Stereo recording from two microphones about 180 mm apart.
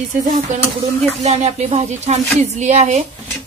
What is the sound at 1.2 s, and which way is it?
Speech, 40° right (ahead or behind).